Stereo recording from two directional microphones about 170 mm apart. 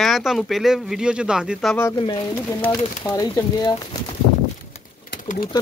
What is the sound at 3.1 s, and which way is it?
Speech, 20° left (ahead or behind).